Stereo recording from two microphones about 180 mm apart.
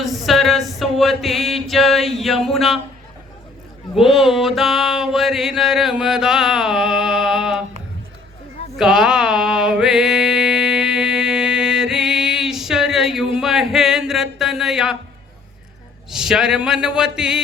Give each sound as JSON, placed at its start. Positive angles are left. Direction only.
{"t": 0.0, "sound": "mantra", "side_deg": 0}
{"t": 3.9, "sound": "mantra", "side_deg": 0}
{"t": 8.8, "sound": "mantra", "side_deg": -5}
{"t": 13.4, "sound": "a sound", "side_deg": 0}
{"t": 16.0, "sound": "mantra", "side_deg": -5}